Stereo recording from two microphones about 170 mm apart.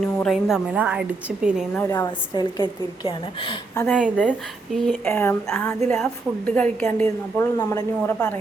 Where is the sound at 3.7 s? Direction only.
10° left (ahead or behind).